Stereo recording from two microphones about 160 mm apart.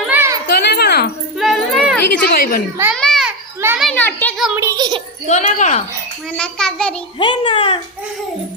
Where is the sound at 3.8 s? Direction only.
10° left (ahead or behind).